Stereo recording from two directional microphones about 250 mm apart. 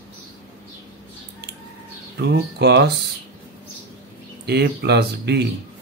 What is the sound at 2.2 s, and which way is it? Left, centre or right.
Speech, right.